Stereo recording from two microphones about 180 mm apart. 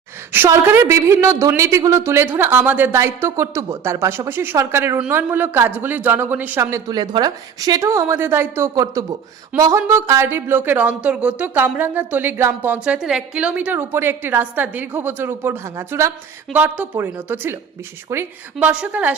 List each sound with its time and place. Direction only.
0.3 s a woman's voice: 15° right (ahead or behind)